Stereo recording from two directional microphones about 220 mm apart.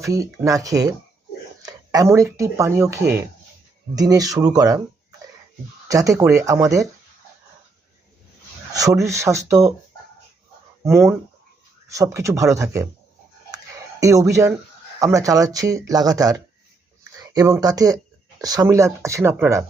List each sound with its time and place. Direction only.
0.0 s speech: 15° right (ahead or behind)
5.9 s speech: 15° right (ahead or behind)
8.7 s speech: 15° right (ahead or behind)
10.8 s speech: 10° right (ahead or behind)
14.0 s speech: 15° right (ahead or behind)